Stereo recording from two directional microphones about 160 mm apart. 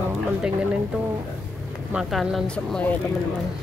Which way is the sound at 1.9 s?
Centre (ahead or behind).